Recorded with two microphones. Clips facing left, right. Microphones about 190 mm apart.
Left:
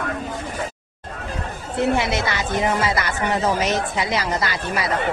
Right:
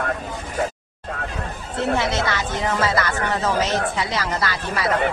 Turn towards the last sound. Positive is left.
turn(degrees=15)  # may be behind; listen again after turning